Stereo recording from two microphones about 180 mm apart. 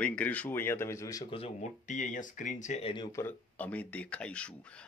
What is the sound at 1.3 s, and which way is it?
Speech, 40° left (ahead or behind).